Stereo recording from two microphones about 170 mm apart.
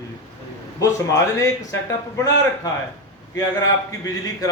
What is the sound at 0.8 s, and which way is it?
Speech, 20° left (ahead or behind).